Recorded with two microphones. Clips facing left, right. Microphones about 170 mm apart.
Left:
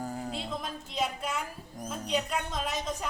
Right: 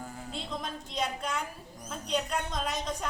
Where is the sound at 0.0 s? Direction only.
40° left (ahead or behind).